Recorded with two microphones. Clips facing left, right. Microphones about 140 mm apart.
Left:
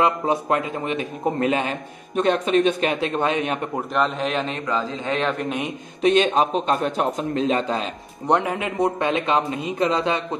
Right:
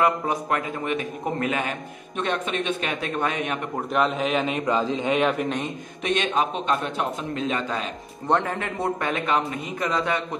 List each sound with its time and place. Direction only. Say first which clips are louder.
0.0 s a man's voice: left 2 dB; 25° left (ahead or behind)
3.0 s a man's voice: left 4 dB; 25° left (ahead or behind)
3.9 s a man's voice: right 1 dB; 5° right (ahead or behind)
6.0 s a man's voice: left 6 dB; 35° left (ahead or behind)
8.3 s a man's voice: left 3 dB; 15° left (ahead or behind)